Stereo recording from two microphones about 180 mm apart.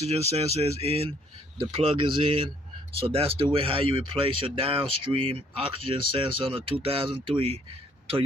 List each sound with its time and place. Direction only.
0.0 s speech: 35° right (ahead or behind)